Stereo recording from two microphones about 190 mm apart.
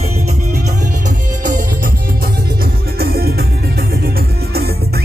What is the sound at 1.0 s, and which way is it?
Music, 45° right (ahead or behind).